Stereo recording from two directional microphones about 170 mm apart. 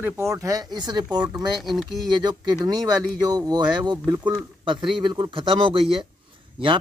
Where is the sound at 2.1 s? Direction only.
25° right (ahead or behind).